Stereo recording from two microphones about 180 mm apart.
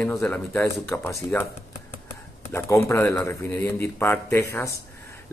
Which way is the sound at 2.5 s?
15° left (ahead or behind).